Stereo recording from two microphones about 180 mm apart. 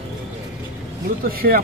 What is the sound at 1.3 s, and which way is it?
Speech, 55° right (ahead or behind).